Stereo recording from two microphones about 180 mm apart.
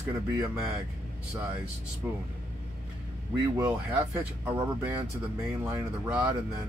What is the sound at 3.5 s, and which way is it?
Speech, 15° right (ahead or behind).